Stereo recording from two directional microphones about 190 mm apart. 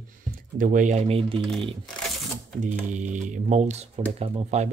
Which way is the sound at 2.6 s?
40° right (ahead or behind).